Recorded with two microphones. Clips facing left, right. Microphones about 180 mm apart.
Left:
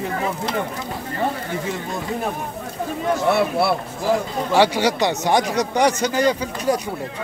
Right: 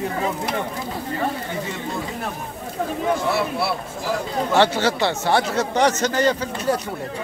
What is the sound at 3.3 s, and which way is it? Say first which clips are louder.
Speech: left 4 dB; 55° left (ahead or behind).